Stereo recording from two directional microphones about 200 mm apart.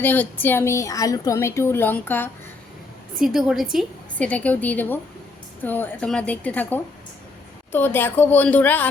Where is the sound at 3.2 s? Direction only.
Centre (ahead or behind).